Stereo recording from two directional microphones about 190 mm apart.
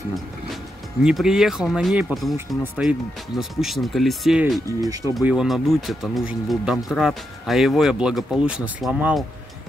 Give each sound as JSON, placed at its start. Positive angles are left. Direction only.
{"t": 1.0, "sound": "speech", "side_deg": -5}
{"t": 4.6, "sound": "speech", "side_deg": -20}
{"t": 5.1, "sound": "speech", "side_deg": -5}